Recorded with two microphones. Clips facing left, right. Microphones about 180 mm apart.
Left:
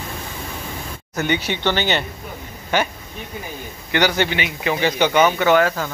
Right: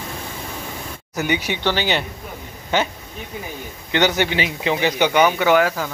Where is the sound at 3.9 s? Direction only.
20° right (ahead or behind).